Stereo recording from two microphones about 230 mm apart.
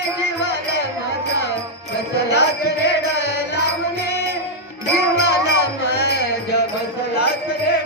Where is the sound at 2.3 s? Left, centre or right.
Left.